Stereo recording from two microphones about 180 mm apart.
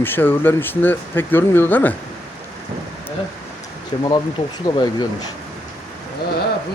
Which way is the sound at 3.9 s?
25° left (ahead or behind).